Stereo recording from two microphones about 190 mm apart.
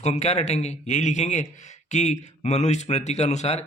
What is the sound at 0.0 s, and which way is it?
Speech, 35° left (ahead or behind).